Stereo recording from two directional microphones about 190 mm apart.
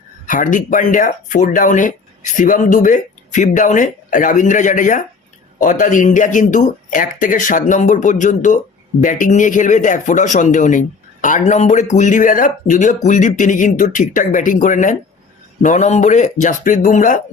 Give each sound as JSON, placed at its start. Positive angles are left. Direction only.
{"t": 0.3, "sound": "speech", "side_deg": 45}